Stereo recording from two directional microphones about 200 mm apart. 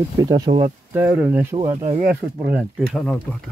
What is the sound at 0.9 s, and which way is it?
Speech, 10° right (ahead or behind).